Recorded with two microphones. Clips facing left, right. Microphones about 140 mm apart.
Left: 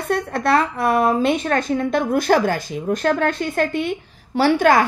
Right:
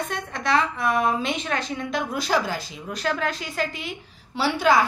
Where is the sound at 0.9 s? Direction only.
45° left (ahead or behind).